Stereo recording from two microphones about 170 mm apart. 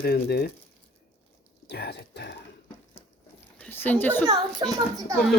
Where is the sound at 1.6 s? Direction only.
75° left (ahead or behind).